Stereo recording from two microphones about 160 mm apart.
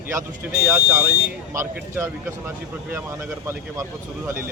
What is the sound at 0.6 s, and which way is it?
Speech, 10° right (ahead or behind).